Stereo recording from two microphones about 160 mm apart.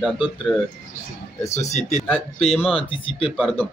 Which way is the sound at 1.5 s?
45° left (ahead or behind).